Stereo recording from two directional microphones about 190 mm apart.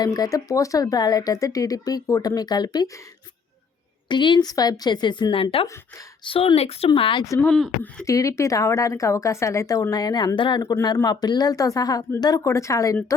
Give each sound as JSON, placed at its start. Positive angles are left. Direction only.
{"t": 0.0, "sound": "speech", "side_deg": 20}
{"t": 4.1, "sound": "speech", "side_deg": 25}
{"t": 7.3, "sound": "speech", "side_deg": 5}
{"t": 8.0, "sound": "a woman's voice", "side_deg": 15}